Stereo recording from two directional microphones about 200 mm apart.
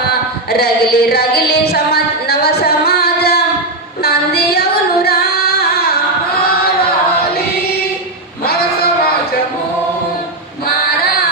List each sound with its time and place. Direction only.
0.5 s music: 50° left (ahead or behind)
4.0 s singing: 50° left (ahead or behind)